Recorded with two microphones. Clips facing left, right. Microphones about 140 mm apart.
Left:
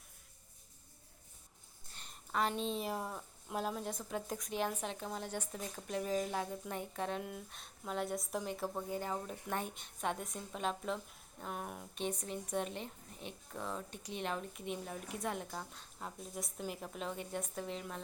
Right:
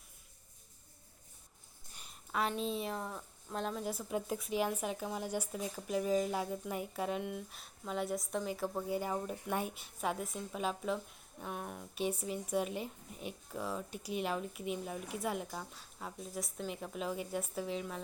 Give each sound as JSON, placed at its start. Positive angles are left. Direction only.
{"t": 1.9, "sound": "a sound", "side_deg": -5}
{"t": 2.9, "sound": "a woman's voice", "side_deg": 10}
{"t": 8.9, "sound": "a woman's voice", "side_deg": -10}